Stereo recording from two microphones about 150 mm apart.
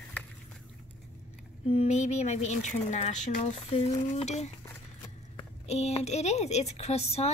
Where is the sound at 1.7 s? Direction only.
45° left (ahead or behind).